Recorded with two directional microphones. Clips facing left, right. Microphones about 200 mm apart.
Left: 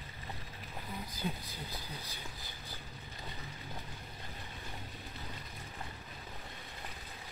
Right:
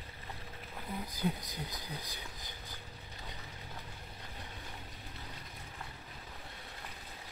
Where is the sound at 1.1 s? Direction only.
15° right (ahead or behind).